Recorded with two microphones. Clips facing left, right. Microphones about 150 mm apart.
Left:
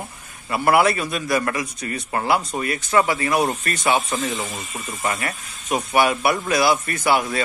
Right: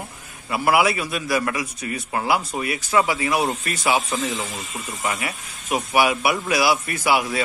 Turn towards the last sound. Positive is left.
turn(degrees=-5)  # may be behind; listen again after turning